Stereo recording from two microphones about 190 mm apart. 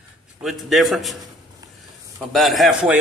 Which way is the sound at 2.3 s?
Centre (ahead or behind).